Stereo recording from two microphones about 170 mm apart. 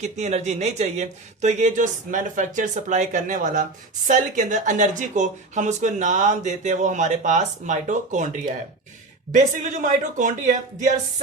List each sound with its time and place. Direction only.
0.0 s speech: 45° right (ahead or behind)